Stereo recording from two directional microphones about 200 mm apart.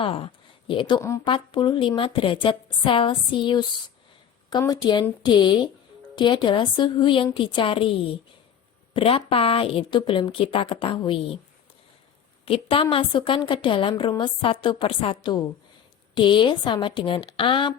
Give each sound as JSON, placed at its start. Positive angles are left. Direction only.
{"t": 0.0, "sound": "a woman's voice", "side_deg": 25}
{"t": 12.5, "sound": "a woman's voice", "side_deg": 30}